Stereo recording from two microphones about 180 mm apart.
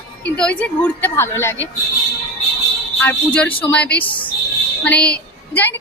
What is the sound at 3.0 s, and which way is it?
A woman's voice, 10° left (ahead or behind).